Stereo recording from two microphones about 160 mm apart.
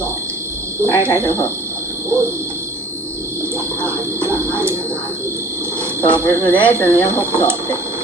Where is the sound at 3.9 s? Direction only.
15° right (ahead or behind).